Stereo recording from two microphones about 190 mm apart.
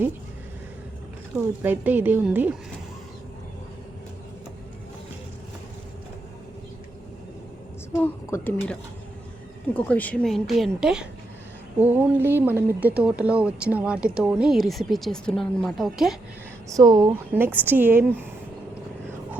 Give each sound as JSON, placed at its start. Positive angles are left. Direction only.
{"t": 1.6, "sound": "a woman's voice", "side_deg": -10}
{"t": 7.9, "sound": "a woman's voice", "side_deg": 10}
{"t": 16.7, "sound": "speech", "side_deg": -20}
{"t": 17.3, "sound": "a woman's voice", "side_deg": -10}